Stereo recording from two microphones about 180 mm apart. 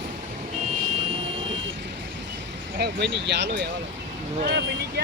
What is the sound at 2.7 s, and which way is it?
Speech, 65° right (ahead or behind).